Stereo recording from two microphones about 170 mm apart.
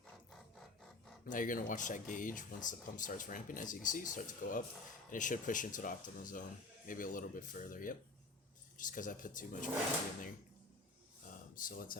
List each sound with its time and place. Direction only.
1.2 s speech: 50° left (ahead or behind)
11.5 s speech: 55° left (ahead or behind)